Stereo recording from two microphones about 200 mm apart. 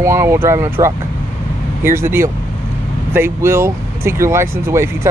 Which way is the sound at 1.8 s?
10° right (ahead or behind).